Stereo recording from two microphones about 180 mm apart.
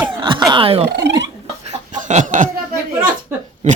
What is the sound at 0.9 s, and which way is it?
Speech, 65° right (ahead or behind).